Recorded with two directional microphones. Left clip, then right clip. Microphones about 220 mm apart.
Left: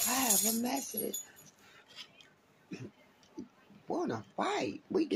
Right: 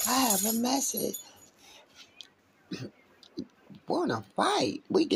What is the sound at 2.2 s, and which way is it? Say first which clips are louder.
Cat: right 9 dB; 25° right (ahead or behind).